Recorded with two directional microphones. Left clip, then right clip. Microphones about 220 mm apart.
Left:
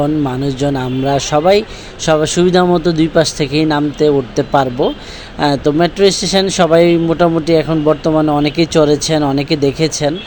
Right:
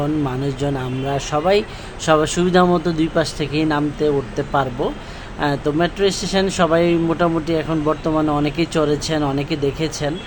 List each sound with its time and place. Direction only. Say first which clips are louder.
0.0 s speech: left 6 dB; 20° left (ahead or behind)